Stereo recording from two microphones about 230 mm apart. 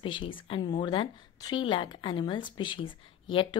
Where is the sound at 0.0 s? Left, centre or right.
Left.